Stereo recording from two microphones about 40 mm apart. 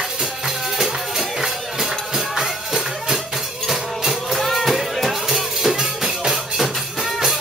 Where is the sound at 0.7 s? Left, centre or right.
Centre.